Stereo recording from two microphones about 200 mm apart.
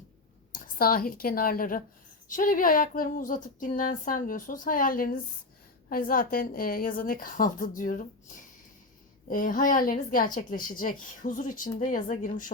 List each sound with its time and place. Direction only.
0.5 s a woman's voice: 45° left (ahead or behind)
9.3 s a woman's voice: 45° left (ahead or behind)